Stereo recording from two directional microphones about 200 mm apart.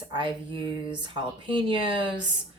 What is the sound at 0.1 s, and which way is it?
Speech, 25° right (ahead or behind).